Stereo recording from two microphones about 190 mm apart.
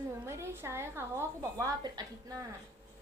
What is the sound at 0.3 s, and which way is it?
A woman's voice, 15° right (ahead or behind).